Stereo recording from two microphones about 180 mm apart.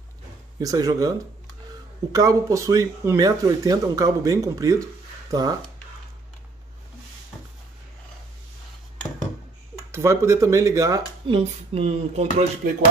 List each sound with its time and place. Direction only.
0.6 s speech: 20° right (ahead or behind)
2.1 s speech: 20° right (ahead or behind)
9.8 s speech: 15° right (ahead or behind)
11.2 s speech: 30° right (ahead or behind)